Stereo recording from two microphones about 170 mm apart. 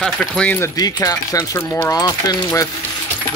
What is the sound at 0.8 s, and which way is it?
Speech, 20° left (ahead or behind).